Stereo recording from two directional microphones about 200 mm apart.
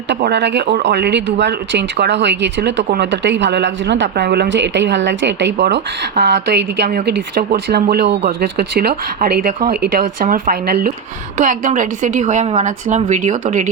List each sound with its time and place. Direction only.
0.1 s speech: 60° right (ahead or behind)
11.3 s a woman's voice: 40° right (ahead or behind)